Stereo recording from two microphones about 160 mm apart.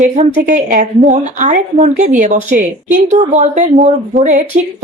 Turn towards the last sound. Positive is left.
turn(degrees=-50)  # may be behind; listen again after turning